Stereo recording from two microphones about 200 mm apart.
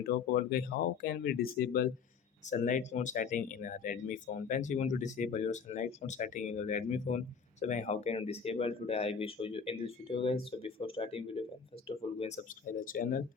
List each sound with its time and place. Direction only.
0.0 s speech: 50° left (ahead or behind)